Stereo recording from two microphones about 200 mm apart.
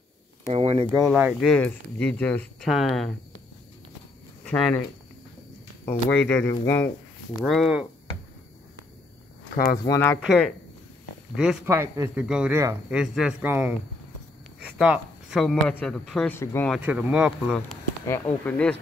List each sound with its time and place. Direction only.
0.5 s a sound: 30° right (ahead or behind)
1.0 s speech: 5° right (ahead or behind)
1.5 s speech: 5° left (ahead or behind)
4.5 s speech: centre (ahead or behind)
5.9 s speech: 10° left (ahead or behind)
7.4 s speech: centre (ahead or behind)
9.8 s speech: 15° left (ahead or behind)
10.2 s a man's voice: centre (ahead or behind)
14.8 s speech: centre (ahead or behind)
16.7 s speech: 5° right (ahead or behind)
18.0 s speech: 10° left (ahead or behind)